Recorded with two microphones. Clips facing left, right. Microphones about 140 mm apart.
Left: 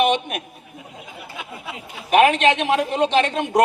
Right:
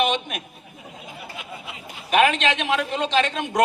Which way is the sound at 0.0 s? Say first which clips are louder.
Left 4 dB; 55° left (ahead or behind).